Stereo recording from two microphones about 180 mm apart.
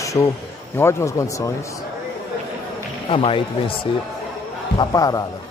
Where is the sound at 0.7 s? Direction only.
15° left (ahead or behind).